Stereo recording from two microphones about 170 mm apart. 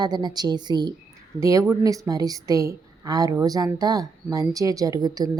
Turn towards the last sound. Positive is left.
turn(degrees=-20)  # may be behind; listen again after turning